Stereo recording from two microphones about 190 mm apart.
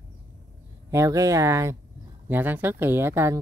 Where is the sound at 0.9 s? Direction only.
15° right (ahead or behind).